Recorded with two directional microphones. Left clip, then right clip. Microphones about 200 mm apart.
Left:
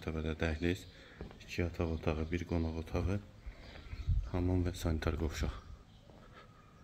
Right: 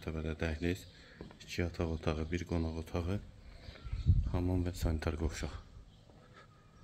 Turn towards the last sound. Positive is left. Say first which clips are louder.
# left 1 dB
turn(degrees=0)  # may be behind; listen again after turning